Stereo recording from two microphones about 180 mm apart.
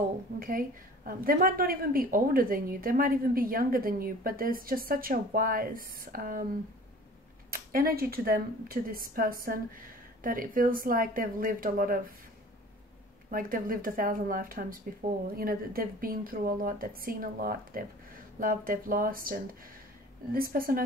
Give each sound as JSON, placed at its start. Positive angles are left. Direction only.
{"t": 0.4, "sound": "a woman's voice", "side_deg": -50}
{"t": 7.5, "sound": "a woman's voice", "side_deg": -55}
{"t": 13.3, "sound": "a woman's voice", "side_deg": -50}